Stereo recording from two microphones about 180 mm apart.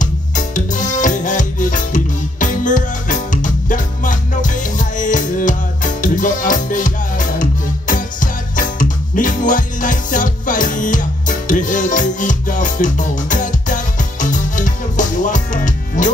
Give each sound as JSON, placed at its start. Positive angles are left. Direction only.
{"t": 0.0, "sound": "music", "side_deg": 45}